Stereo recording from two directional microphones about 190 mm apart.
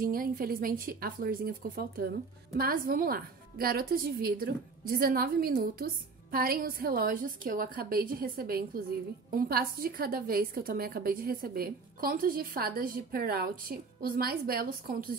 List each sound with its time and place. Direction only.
0.0 s a woman's voice: 50° right (ahead or behind)